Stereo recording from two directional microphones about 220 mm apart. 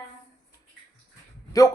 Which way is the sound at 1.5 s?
15° left (ahead or behind).